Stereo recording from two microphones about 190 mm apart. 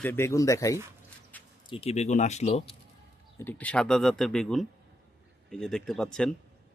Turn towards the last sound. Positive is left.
turn(degrees=5)  # may be behind; listen again after turning